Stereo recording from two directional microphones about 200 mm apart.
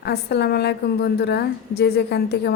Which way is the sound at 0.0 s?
55° left (ahead or behind).